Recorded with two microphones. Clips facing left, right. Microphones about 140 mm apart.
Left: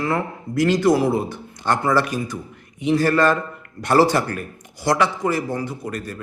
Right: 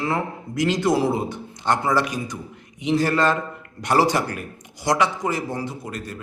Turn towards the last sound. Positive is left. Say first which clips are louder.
# left 3 dB
turn(degrees=-20)  # may be behind; listen again after turning